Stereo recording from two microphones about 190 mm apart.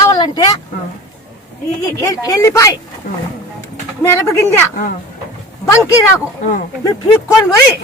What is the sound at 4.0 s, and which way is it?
Speech, 15° left (ahead or behind).